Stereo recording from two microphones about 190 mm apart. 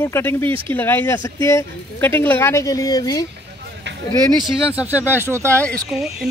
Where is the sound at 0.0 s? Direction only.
15° left (ahead or behind).